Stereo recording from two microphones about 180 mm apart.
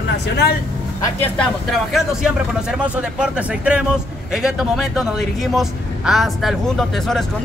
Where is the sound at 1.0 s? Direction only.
10° left (ahead or behind).